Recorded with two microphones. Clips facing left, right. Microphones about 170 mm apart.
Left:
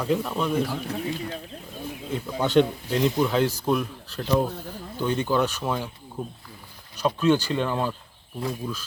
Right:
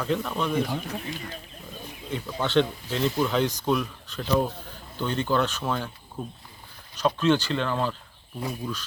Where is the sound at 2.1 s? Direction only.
15° left (ahead or behind).